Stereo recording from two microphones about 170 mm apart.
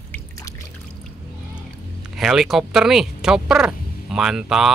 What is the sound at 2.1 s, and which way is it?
Speech, centre (ahead or behind).